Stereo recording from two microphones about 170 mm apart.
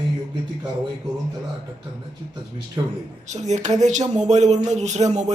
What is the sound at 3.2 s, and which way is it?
Speech, 45° right (ahead or behind).